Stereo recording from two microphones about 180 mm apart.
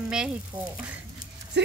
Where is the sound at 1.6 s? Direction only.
70° right (ahead or behind).